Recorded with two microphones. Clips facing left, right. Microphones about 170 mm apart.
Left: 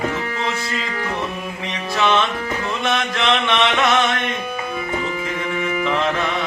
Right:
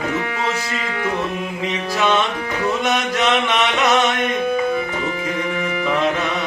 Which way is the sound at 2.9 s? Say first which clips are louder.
Left 2 dB; 15° right (ahead or behind).